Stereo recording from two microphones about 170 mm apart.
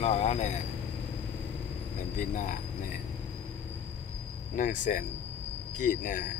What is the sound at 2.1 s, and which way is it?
Speech, 50° left (ahead or behind).